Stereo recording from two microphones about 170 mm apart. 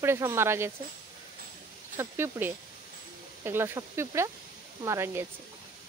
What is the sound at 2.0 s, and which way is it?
Speech, 15° right (ahead or behind).